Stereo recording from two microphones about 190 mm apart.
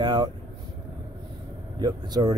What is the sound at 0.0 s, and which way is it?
Vehicle, 25° right (ahead or behind).